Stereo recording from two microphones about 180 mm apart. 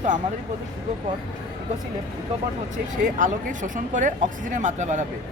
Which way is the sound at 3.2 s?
45° right (ahead or behind).